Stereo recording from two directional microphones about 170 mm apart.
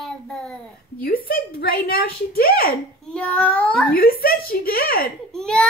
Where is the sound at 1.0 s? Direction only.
60° left (ahead or behind).